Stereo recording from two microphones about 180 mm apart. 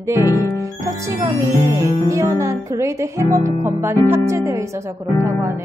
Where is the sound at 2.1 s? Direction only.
15° right (ahead or behind).